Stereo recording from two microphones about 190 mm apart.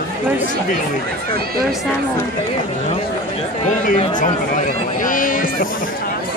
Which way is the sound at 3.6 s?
40° left (ahead or behind).